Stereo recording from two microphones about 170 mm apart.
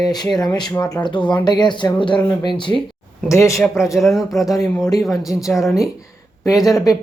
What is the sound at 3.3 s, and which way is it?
Speech, 15° left (ahead or behind).